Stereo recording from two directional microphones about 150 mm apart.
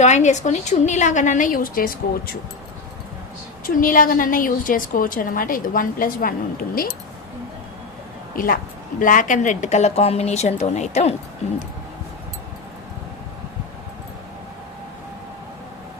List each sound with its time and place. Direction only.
0.0 s a woman's voice: 50° left (ahead or behind); by 2.3 s 70° left (ahead or behind)
3.6 s a woman's voice: 65° left (ahead or behind)
9.0 s a woman's voice: 60° left (ahead or behind)